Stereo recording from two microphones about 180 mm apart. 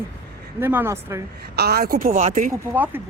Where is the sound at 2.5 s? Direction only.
10° right (ahead or behind).